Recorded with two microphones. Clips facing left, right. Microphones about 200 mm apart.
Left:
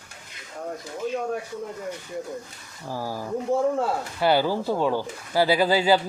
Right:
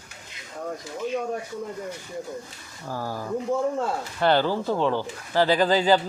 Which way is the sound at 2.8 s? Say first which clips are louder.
Even; 10° left (ahead or behind).